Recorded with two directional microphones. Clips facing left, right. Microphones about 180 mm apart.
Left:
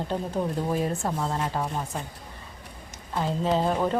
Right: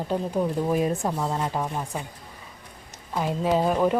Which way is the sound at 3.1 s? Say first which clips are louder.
Right 2 dB; 10° right (ahead or behind).